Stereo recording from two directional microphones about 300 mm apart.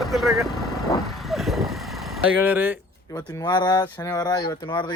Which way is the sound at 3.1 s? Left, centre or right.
Centre.